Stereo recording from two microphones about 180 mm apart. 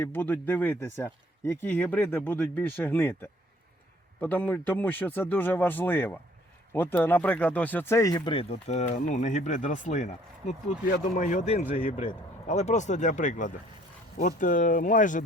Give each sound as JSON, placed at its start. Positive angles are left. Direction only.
{"t": 0.0, "sound": "speech", "side_deg": 10}